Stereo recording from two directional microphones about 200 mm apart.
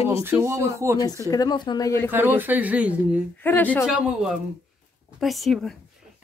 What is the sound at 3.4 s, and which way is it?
Speech, 10° left (ahead or behind).